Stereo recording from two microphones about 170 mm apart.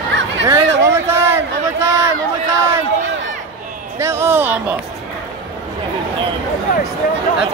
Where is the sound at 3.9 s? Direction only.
15° right (ahead or behind).